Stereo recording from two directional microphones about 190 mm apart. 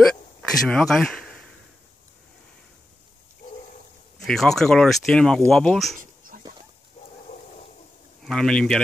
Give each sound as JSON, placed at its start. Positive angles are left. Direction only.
{"t": 0.0, "sound": "speech", "side_deg": 5}
{"t": 4.3, "sound": "speech", "side_deg": 0}
{"t": 5.9, "sound": "a sound", "side_deg": -45}
{"t": 8.3, "sound": "speech", "side_deg": 5}